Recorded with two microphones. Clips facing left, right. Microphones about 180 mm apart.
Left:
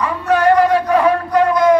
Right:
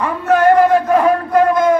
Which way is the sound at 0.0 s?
45° right (ahead or behind).